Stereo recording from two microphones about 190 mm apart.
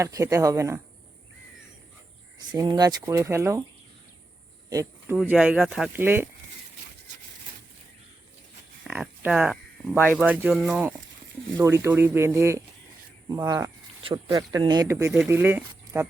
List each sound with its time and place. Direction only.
0.0 s speech: 15° right (ahead or behind)
2.5 s speech: 20° right (ahead or behind)
4.7 s speech: 15° right (ahead or behind)
8.8 s a sound: 5° right (ahead or behind)
10.0 s speech: 10° left (ahead or behind)
10.2 s speech: 10° right (ahead or behind)